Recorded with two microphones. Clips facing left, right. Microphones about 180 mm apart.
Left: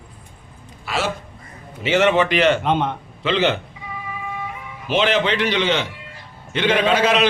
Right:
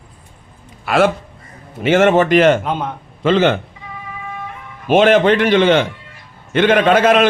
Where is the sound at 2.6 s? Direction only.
5° right (ahead or behind).